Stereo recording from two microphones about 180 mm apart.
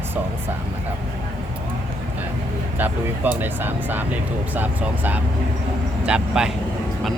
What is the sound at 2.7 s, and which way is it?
Speech, 10° right (ahead or behind).